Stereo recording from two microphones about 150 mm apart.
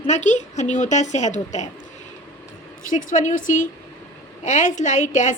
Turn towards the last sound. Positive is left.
turn(degrees=55)  # may be behind; listen again after turning